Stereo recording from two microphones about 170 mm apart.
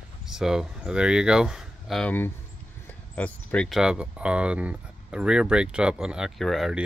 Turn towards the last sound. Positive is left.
turn(degrees=0)  # may be behind; listen again after turning